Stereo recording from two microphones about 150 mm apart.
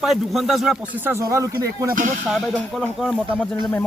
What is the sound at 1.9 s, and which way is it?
Speech, 60° right (ahead or behind).